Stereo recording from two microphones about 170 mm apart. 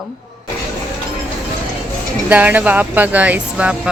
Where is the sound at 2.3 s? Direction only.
10° right (ahead or behind).